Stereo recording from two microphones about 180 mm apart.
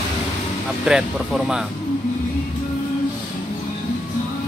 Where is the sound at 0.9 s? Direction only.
5° right (ahead or behind).